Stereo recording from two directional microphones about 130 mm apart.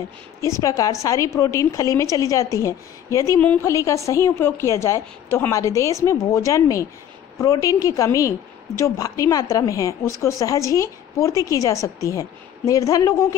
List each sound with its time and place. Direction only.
0.4 s a woman's voice: 25° left (ahead or behind)